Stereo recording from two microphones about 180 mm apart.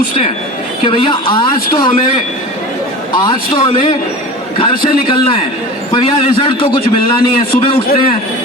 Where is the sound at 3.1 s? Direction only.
25° left (ahead or behind).